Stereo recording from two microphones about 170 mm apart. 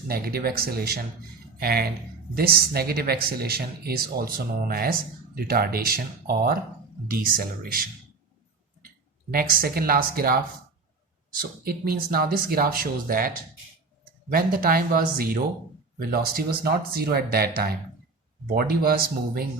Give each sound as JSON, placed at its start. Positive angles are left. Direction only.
{"t": 0.1, "sound": "speech", "side_deg": -65}
{"t": 9.3, "sound": "speech", "side_deg": -55}
{"t": 11.3, "sound": "speech", "side_deg": -60}